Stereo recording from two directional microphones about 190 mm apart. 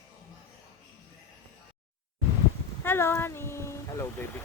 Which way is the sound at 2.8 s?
10° left (ahead or behind).